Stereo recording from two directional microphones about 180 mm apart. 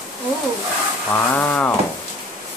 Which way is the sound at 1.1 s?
10° left (ahead or behind).